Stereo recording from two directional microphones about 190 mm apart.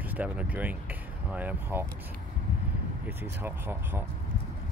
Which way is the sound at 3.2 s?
10° right (ahead or behind).